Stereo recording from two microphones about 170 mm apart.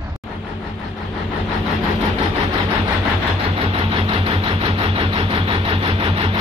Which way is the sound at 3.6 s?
30° right (ahead or behind).